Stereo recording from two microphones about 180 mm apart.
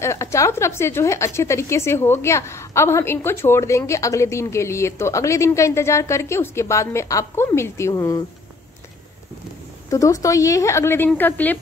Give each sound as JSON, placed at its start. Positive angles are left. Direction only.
{"t": 0.0, "sound": "a woman's voice", "side_deg": 15}
{"t": 9.8, "sound": "a woman's voice", "side_deg": 20}